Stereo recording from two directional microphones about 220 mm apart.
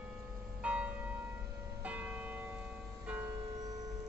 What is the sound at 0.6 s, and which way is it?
Church bell, 5° right (ahead or behind).